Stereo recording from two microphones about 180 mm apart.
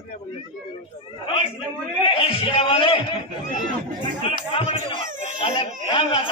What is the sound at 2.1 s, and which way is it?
Speech, 30° left (ahead or behind).